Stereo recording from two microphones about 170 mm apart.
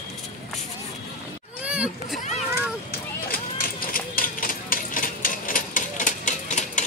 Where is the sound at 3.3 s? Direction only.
60° left (ahead or behind).